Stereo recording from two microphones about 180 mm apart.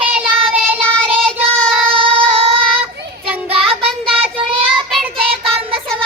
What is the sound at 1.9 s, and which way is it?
Child singing, 30° right (ahead or behind).